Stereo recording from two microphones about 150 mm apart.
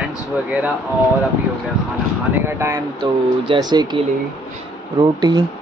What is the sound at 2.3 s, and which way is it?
Speech, 15° right (ahead or behind).